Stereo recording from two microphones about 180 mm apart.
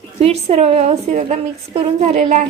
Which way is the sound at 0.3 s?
35° right (ahead or behind).